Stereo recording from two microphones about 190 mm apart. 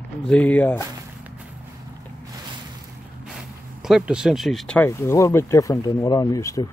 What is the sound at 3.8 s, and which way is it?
Speech, 5° right (ahead or behind).